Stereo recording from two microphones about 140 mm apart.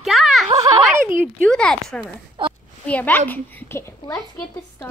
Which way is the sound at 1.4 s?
5° left (ahead or behind).